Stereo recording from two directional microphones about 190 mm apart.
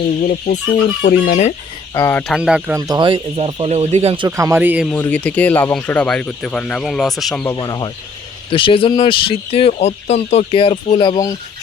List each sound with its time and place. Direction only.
0.2 s chicken: 45° left (ahead or behind)
1.9 s speech: 10° left (ahead or behind)
2.3 s speech: 5° right (ahead or behind)
2.7 s speech: 20° right (ahead or behind)
4.3 s speech: 15° right (ahead or behind)
4.9 s speech: 10° left (ahead or behind)
7.5 s speech: 20° left (ahead or behind)